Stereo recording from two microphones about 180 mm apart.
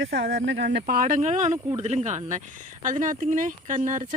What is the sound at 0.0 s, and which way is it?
Speech, 90° right.